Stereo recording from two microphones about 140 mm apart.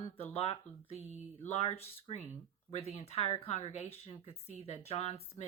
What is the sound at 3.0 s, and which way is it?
Speech, 50° left (ahead or behind).